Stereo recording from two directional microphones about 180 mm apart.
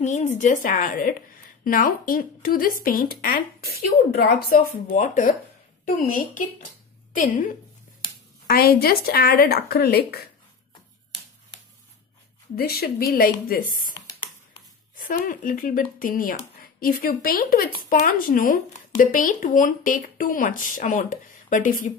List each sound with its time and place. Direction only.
0.0 s speech: 40° left (ahead or behind)
8.5 s speech: 60° left (ahead or behind)
12.5 s speech: 60° left (ahead or behind)
15.0 s speech: 50° left (ahead or behind)